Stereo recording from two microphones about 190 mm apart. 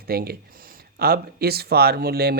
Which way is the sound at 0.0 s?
55° right (ahead or behind).